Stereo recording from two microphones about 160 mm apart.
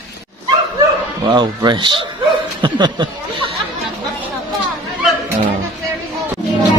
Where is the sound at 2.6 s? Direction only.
30° right (ahead or behind).